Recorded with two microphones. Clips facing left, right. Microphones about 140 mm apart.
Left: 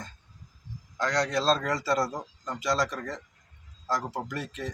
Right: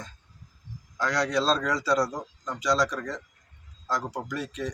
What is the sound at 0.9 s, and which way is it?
Speech, 5° right (ahead or behind).